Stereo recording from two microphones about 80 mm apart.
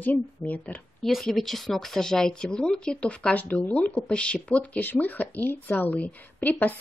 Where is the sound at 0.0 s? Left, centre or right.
Centre.